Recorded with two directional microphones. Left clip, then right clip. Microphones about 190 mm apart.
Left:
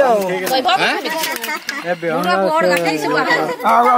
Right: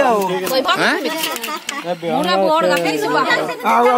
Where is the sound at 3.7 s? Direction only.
25° left (ahead or behind).